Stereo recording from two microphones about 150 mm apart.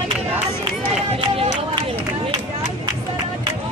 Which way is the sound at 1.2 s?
30° right (ahead or behind).